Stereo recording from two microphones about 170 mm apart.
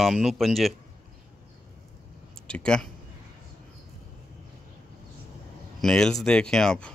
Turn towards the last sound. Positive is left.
turn(degrees=5)  # may be behind; listen again after turning